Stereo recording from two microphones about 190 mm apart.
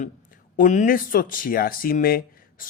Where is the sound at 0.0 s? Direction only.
40° left (ahead or behind).